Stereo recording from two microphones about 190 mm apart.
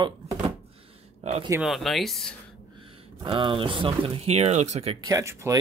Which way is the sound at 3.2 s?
25° right (ahead or behind).